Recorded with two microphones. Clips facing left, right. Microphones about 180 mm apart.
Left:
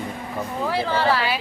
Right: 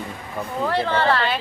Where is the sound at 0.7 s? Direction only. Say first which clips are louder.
Right 1 dB; 5° left (ahead or behind).